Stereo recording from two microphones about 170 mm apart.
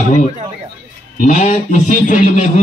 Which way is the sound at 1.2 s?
45° left (ahead or behind).